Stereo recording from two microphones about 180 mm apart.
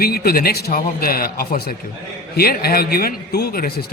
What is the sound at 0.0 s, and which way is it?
A man's voice, 60° left (ahead or behind).